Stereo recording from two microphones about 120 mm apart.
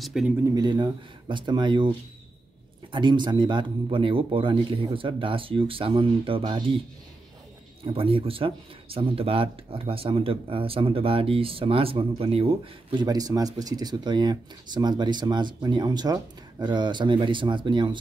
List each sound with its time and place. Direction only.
0.0 s speech: 5° right (ahead or behind)
0.6 s speech: 40° right (ahead or behind)
2.9 s speech: 40° right (ahead or behind)
7.8 s speech: 50° right (ahead or behind)
13.0 s speech: 30° right (ahead or behind)